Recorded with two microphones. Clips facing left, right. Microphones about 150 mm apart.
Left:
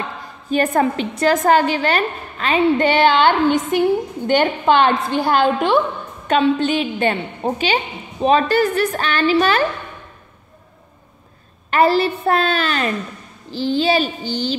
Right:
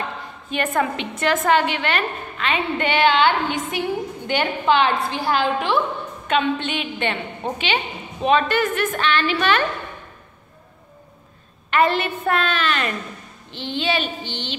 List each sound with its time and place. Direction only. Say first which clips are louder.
0.5 s a woman's voice: left 5 dB; 40° left (ahead or behind)
11.7 s a woman's voice: left 4 dB; 35° left (ahead or behind)